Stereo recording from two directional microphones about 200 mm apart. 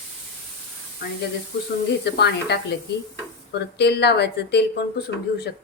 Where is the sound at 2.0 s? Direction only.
55° left (ahead or behind).